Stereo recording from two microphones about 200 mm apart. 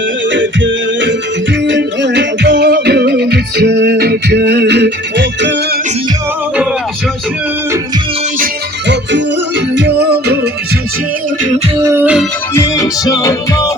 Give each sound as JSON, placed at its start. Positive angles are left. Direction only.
{"t": 0.3, "sound": "music", "side_deg": -65}
{"t": 8.9, "sound": "music", "side_deg": -60}
{"t": 11.8, "sound": "music", "side_deg": -15}
{"t": 12.5, "sound": "music", "side_deg": 15}